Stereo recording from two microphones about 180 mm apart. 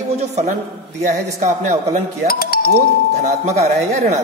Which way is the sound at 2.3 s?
55° left (ahead or behind).